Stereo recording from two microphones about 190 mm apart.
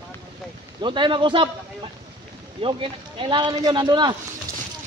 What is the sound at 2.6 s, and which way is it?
Speech, 25° right (ahead or behind).